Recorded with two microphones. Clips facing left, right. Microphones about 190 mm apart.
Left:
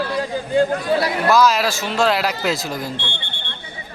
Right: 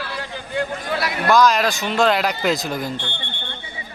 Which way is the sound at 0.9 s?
35° left (ahead or behind).